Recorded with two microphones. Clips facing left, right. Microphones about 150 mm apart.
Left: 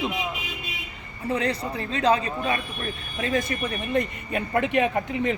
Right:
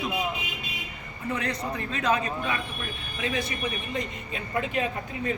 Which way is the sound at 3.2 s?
50° left (ahead or behind).